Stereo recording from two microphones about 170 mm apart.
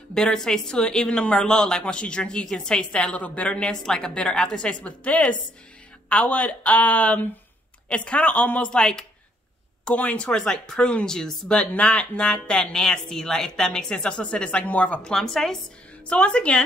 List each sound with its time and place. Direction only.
0.1 s speech: 5° left (ahead or behind)